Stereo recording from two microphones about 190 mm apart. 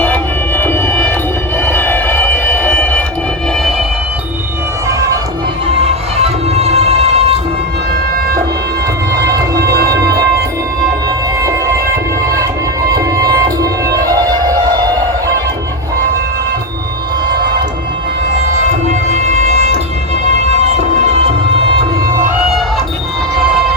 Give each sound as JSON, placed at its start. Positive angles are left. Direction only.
{"t": 0.0, "sound": "music", "side_deg": 10}
{"t": 4.9, "sound": "music", "side_deg": -15}
{"t": 5.8, "sound": "music", "side_deg": -35}
{"t": 9.1, "sound": "music", "side_deg": -20}
{"t": 12.9, "sound": "music", "side_deg": -20}
{"t": 18.9, "sound": "music", "side_deg": -40}